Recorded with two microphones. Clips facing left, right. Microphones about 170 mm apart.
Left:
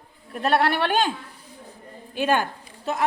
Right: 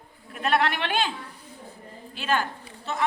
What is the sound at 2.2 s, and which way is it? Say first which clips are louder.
Speech: left 5 dB; 50° left (ahead or behind).